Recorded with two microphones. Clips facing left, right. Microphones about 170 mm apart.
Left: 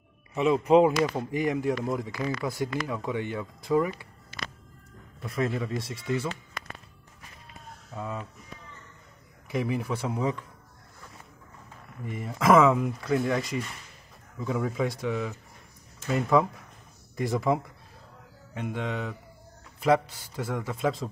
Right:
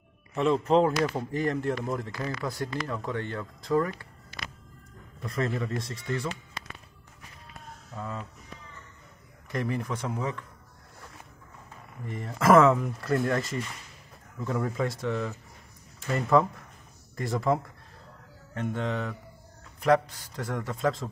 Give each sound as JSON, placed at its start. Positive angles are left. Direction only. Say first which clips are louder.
{"t": 0.3, "sound": "speech", "louder": "left 2 dB", "side_deg": 5}
{"t": 5.2, "sound": "a man's voice", "louder": "left 1 dB", "side_deg": 0}
{"t": 7.9, "sound": "speech", "louder": "left 2 dB", "side_deg": 10}
{"t": 9.5, "sound": "speech", "louder": "left 2 dB", "side_deg": 5}
{"t": 12.1, "sound": "a man's voice", "louder": "right 1 dB", "side_deg": 5}